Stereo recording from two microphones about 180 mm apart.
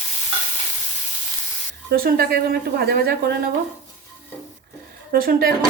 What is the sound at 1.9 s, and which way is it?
A woman's voice, 55° right (ahead or behind).